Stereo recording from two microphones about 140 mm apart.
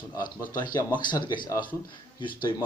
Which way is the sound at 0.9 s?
30° left (ahead or behind).